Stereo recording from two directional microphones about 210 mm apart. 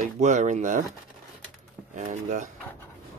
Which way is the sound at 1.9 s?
35° right (ahead or behind).